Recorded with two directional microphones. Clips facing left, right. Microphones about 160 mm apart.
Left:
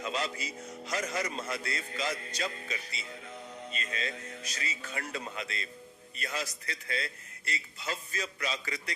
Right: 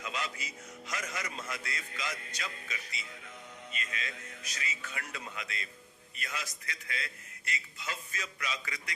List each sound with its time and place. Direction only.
0.0 s a man's voice: 35° left (ahead or behind)